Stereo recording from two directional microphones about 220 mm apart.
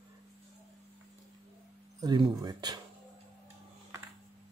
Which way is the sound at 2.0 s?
20° right (ahead or behind).